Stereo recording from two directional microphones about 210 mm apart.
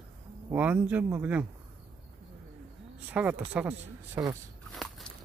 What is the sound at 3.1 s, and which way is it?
Speech, 5° right (ahead or behind).